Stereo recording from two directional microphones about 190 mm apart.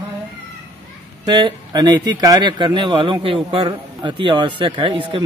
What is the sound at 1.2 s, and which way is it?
A man's voice, 20° right (ahead or behind).